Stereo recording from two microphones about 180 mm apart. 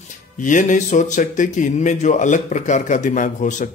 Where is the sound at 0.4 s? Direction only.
45° left (ahead or behind).